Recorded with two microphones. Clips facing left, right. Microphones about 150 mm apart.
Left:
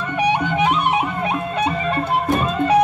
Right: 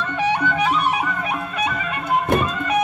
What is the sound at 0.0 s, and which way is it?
Music, 15° left (ahead or behind).